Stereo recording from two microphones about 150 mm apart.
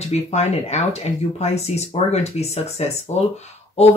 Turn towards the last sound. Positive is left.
turn(degrees=45)  # may be behind; listen again after turning